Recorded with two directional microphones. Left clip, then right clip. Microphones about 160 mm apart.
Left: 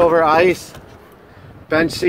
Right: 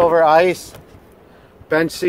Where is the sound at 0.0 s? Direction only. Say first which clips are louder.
Even; 10° right (ahead or behind).